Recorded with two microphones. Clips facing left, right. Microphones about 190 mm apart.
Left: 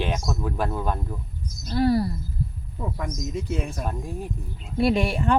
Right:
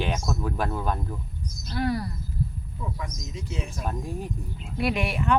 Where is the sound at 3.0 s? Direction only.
55° left (ahead or behind).